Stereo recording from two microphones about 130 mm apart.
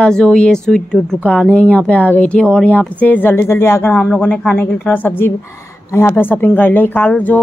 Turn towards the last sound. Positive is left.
turn(degrees=10)  # may be behind; listen again after turning